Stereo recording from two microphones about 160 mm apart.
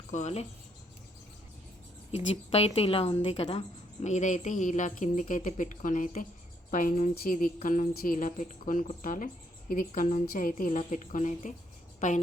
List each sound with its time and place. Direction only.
0.1 s speech: 45° left (ahead or behind)
2.1 s a woman's voice: 40° left (ahead or behind)